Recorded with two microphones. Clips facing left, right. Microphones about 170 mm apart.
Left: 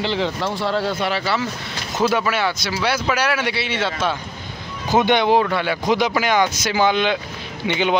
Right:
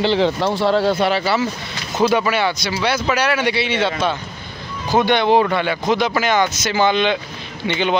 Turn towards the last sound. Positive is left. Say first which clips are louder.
# even
turn(degrees=10)  # may be behind; listen again after turning